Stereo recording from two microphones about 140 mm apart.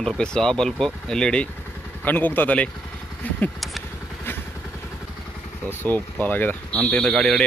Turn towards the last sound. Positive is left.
turn(degrees=0)  # may be behind; listen again after turning